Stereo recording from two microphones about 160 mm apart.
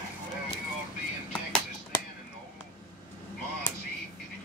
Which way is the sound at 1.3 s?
5° left (ahead or behind).